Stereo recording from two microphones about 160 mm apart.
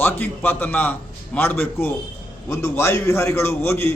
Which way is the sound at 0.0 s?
10° left (ahead or behind).